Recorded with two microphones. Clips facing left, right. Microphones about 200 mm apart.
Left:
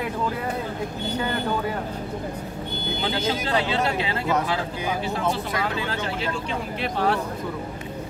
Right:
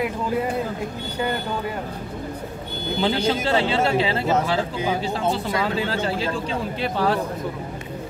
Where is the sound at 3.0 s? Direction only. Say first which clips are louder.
Right 5 dB; 30° right (ahead or behind).